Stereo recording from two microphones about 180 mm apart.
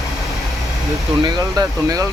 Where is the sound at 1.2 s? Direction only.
20° right (ahead or behind).